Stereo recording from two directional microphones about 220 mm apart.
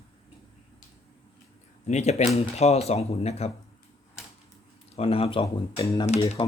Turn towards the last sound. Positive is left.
turn(degrees=20)  # may be behind; listen again after turning